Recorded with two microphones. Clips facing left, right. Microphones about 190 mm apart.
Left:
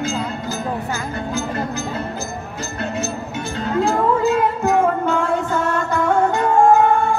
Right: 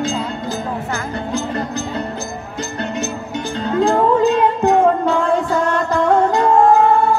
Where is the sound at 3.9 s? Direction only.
30° right (ahead or behind).